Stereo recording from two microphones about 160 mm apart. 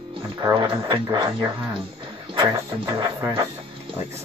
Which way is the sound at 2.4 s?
35° right (ahead or behind).